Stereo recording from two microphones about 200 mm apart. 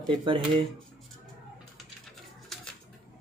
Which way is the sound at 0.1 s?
25° right (ahead or behind).